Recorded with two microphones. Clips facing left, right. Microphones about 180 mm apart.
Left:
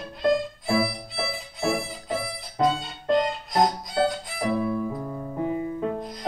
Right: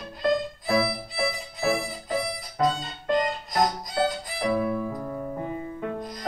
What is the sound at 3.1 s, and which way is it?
Music, centre (ahead or behind).